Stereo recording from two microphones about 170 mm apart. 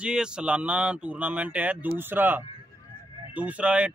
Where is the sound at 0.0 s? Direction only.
5° right (ahead or behind).